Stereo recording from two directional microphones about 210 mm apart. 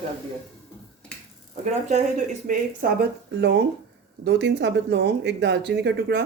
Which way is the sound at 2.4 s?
45° right (ahead or behind).